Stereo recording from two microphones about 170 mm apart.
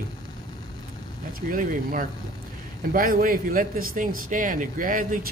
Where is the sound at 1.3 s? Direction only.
55° right (ahead or behind).